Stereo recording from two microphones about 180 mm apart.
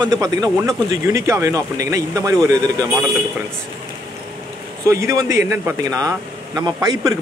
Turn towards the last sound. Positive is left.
turn(degrees=-20)  # may be behind; listen again after turning